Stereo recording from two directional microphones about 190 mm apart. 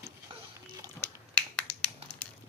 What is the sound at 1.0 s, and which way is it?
Finger snapping, 5° left (ahead or behind).